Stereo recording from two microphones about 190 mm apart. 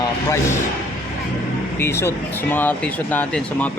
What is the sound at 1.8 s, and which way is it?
Speech, 15° left (ahead or behind).